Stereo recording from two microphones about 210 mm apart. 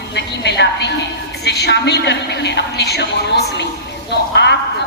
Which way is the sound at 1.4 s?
55° left (ahead or behind).